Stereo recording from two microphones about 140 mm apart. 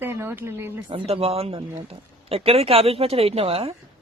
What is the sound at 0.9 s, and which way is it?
Speech, 40° right (ahead or behind).